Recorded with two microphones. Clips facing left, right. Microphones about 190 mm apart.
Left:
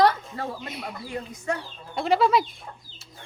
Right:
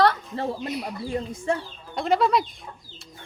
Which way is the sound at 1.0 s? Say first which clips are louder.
Right 4 dB; 30° right (ahead or behind).